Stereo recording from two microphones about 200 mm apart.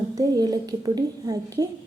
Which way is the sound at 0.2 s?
20° right (ahead or behind).